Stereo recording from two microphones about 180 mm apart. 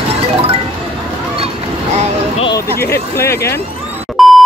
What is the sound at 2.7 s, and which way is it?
Speech, 60° left (ahead or behind).